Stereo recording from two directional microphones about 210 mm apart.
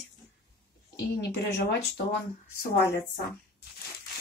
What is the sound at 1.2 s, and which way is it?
Speech, 55° left (ahead or behind).